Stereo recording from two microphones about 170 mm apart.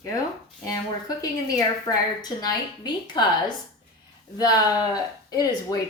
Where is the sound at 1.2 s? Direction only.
20° left (ahead or behind).